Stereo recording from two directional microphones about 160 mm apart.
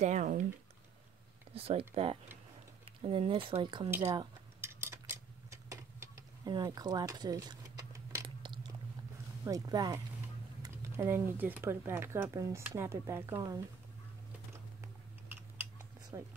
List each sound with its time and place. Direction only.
0.0 s speech: 50° right (ahead or behind)
1.5 s speech: 35° right (ahead or behind)
4.6 s a sound: 15° right (ahead or behind)
6.5 s speech: 25° right (ahead or behind)
9.4 s speech: 25° right (ahead or behind)
16.1 s speech: 20° right (ahead or behind)